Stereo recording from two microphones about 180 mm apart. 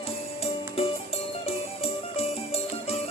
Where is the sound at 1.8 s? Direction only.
35° left (ahead or behind).